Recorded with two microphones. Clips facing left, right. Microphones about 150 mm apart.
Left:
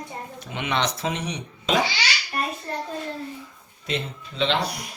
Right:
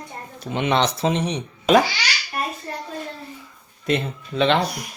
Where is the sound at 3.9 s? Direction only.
55° right (ahead or behind).